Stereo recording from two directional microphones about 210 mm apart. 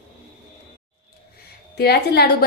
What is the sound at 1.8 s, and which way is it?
Speech, 50° left (ahead or behind).